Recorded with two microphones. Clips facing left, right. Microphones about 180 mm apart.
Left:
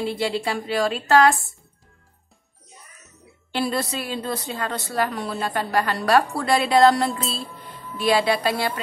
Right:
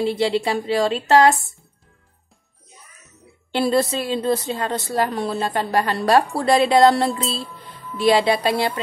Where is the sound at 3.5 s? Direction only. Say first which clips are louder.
Right 6 dB; 25° right (ahead or behind).